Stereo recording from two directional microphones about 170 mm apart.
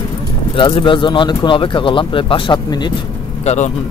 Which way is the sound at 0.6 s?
30° left (ahead or behind).